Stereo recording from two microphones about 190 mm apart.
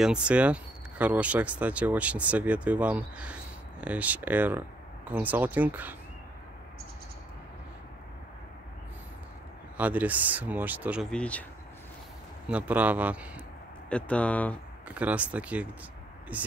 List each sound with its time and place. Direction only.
0.0 s speech: 5° right (ahead or behind)
9.8 s speech: 10° right (ahead or behind)
11.1 s speech: 5° left (ahead or behind)
12.4 s speech: 5° right (ahead or behind)
13.8 s speech: 5° left (ahead or behind)
14.9 s speech: 5° right (ahead or behind)